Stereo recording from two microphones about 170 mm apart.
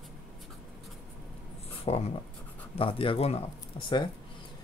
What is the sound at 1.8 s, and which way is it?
Speech, 35° left (ahead or behind).